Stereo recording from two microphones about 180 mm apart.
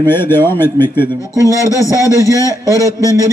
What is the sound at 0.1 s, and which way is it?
A man's voice, 10° left (ahead or behind).